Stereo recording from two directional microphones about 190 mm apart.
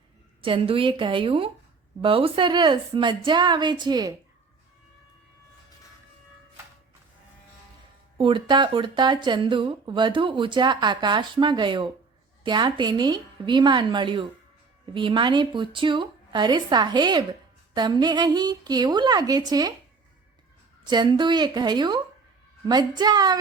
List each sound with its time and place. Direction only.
0.4 s speech: 30° right (ahead or behind)
8.2 s speech: 25° right (ahead or behind)
20.9 s speech: 25° right (ahead or behind)